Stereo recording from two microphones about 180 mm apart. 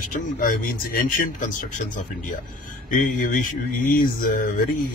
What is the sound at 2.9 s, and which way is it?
Speech, 45° left (ahead or behind).